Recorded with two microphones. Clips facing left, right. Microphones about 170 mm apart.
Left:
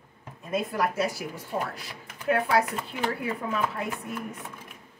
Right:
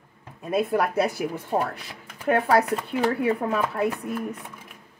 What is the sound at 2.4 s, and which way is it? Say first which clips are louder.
Speech: right 4 dB; 35° right (ahead or behind).